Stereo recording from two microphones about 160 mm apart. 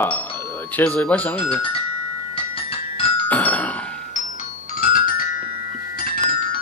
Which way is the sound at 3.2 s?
10° left (ahead or behind).